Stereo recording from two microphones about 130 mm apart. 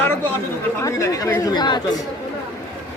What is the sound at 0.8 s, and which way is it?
Speech, 25° left (ahead or behind).